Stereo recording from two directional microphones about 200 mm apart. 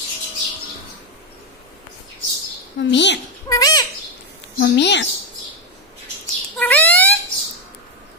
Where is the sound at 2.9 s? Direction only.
60° left (ahead or behind).